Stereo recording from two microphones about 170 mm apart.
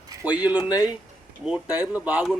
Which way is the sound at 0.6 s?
20° left (ahead or behind).